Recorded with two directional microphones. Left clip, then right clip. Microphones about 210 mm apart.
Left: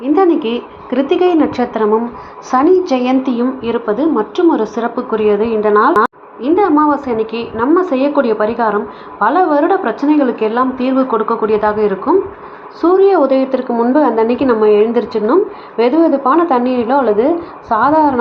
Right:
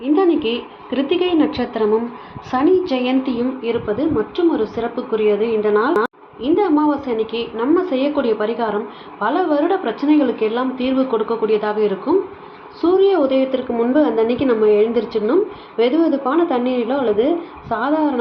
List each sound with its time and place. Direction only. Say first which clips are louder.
0.0 s a woman's voice: left 4 dB; 20° left (ahead or behind)